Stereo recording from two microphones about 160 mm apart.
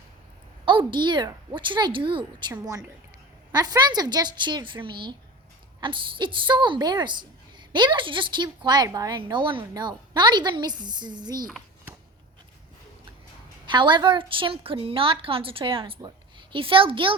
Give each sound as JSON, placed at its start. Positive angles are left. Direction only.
{"t": 0.6, "sound": "a woman's voice", "side_deg": -30}
{"t": 2.5, "sound": "a woman's voice", "side_deg": -20}
{"t": 13.7, "sound": "a woman's voice", "side_deg": -30}